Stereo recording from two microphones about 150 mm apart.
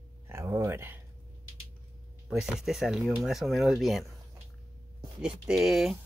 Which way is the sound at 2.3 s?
5° right (ahead or behind).